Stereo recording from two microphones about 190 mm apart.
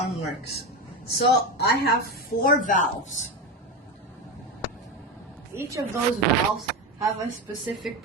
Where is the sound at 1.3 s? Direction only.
60° left (ahead or behind).